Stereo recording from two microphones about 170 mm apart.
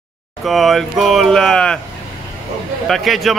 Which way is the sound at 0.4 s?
Centre (ahead or behind).